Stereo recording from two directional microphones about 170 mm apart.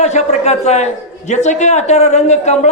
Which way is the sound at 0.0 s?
40° left (ahead or behind).